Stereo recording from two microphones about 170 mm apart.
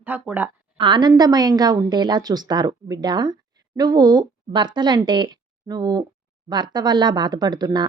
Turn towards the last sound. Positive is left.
turn(degrees=-25)  # may be behind; listen again after turning